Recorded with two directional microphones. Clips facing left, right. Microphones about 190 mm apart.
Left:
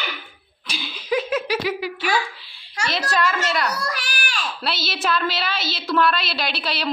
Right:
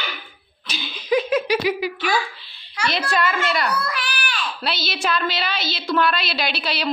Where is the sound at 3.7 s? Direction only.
40° left (ahead or behind).